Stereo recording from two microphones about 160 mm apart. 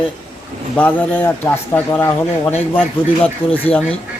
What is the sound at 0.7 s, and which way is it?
A man's voice, 10° left (ahead or behind).